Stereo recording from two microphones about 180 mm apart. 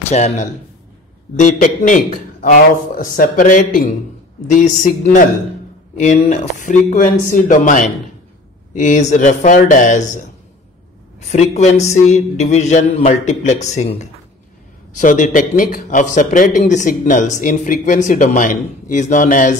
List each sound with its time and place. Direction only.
0.1 s speech: 40° left (ahead or behind)